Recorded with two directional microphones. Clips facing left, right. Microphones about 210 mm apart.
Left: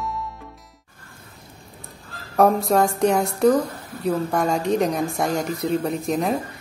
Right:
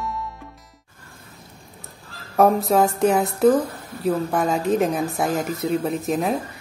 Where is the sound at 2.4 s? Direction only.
Centre (ahead or behind).